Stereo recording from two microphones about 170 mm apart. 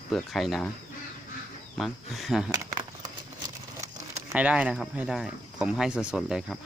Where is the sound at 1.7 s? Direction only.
Centre (ahead or behind).